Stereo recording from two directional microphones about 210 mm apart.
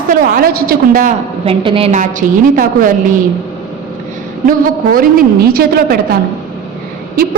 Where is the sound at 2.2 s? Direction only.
40° right (ahead or behind).